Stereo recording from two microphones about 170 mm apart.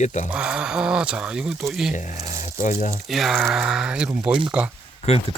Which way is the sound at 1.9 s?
45° left (ahead or behind).